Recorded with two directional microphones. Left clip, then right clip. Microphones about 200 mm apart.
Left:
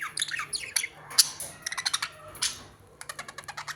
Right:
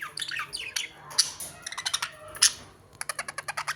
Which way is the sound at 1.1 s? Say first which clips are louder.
Left 2 dB; 30° left (ahead or behind).